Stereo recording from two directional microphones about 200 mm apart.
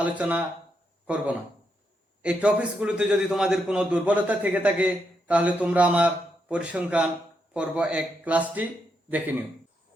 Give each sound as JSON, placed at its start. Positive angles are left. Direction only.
{"t": 0.0, "sound": "a man's voice", "side_deg": -5}